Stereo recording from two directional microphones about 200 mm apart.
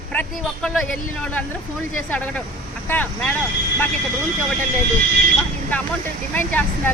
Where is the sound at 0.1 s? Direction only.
5° left (ahead or behind).